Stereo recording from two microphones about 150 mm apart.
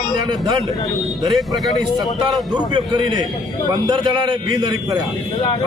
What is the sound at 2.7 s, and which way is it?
A man's voice, 30° right (ahead or behind).